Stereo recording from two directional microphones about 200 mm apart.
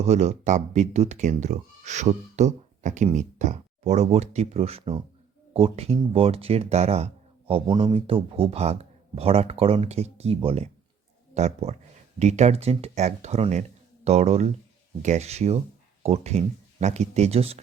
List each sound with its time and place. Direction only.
0.0 s speech: 35° right (ahead or behind)